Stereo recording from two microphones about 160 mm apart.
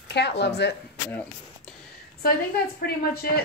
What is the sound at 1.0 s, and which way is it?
Speech, 10° left (ahead or behind).